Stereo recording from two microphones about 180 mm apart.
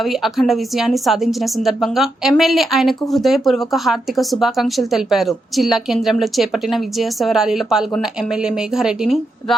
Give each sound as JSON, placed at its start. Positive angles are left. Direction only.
{"t": 0.0, "sound": "a woman's voice", "side_deg": 0}